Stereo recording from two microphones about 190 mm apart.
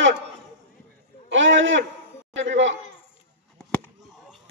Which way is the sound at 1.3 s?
80° right.